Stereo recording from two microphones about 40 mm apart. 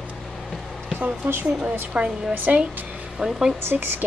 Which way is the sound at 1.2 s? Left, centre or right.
Right.